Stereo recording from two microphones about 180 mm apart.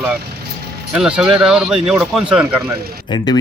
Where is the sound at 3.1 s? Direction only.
25° left (ahead or behind).